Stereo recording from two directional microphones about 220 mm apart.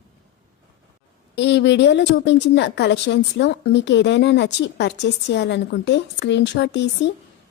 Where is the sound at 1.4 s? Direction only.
55° left (ahead or behind).